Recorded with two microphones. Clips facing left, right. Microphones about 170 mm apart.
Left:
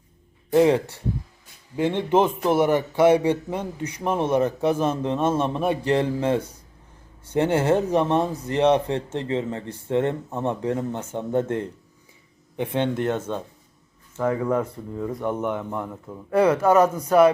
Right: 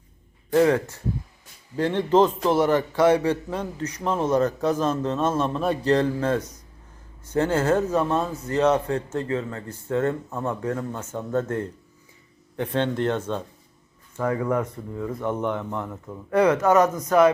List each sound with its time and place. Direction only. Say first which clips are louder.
0.5 s a man's voice: left 1 dB; 20° left (ahead or behind)